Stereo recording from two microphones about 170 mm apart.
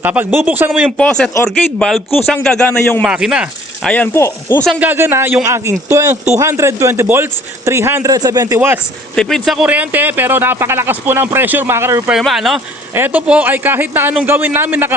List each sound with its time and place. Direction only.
0.0 s speech: 10° right (ahead or behind)
0.9 s a man's voice: 5° left (ahead or behind)
3.0 s a man's voice: 5° right (ahead or behind)
3.8 s speech: 10° left (ahead or behind)
4.6 s speech: 5° right (ahead or behind)
9.1 s speech: centre (ahead or behind); by 12.1 s 15° right (ahead or behind)
12.1 s a man's voice: centre (ahead or behind)